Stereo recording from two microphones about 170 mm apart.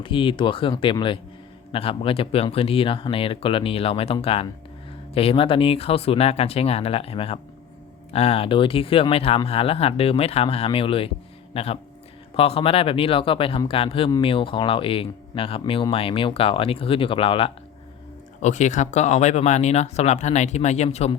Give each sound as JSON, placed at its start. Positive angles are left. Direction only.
{"t": 0.0, "sound": "speech", "side_deg": 30}
{"t": 18.4, "sound": "speech", "side_deg": 45}